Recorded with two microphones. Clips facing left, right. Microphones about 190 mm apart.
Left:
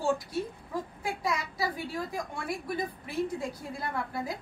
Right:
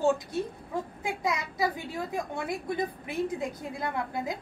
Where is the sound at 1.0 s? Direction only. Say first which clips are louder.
Right 1 dB; 20° right (ahead or behind).